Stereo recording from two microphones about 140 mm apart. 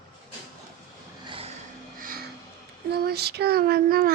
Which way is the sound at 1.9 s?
90° right.